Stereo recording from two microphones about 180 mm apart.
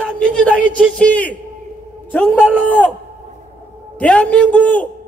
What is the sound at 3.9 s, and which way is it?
Speech, 5° left (ahead or behind).